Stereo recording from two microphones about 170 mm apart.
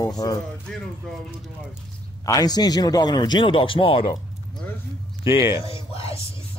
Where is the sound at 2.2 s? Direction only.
20° left (ahead or behind).